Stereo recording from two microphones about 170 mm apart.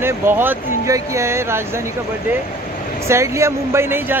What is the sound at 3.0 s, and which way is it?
Speech, 15° right (ahead or behind).